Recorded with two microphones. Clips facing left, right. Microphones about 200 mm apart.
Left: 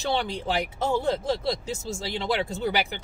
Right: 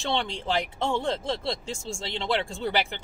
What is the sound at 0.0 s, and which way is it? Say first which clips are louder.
Speech: left 2 dB; centre (ahead or behind).